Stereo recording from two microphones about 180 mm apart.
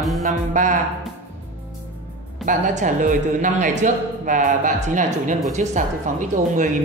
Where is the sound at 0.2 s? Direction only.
45° right (ahead or behind).